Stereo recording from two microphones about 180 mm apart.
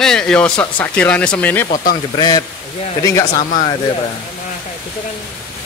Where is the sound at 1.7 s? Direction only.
55° left (ahead or behind).